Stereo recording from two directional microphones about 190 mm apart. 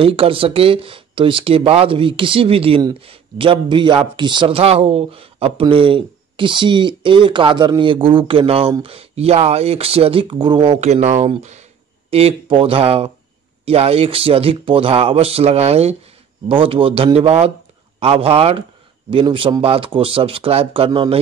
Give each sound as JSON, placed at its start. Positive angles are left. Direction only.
{"t": 0.0, "sound": "speech", "side_deg": -30}